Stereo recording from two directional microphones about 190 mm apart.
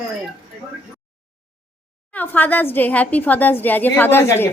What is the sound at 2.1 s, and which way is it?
A woman's voice, 10° left (ahead or behind).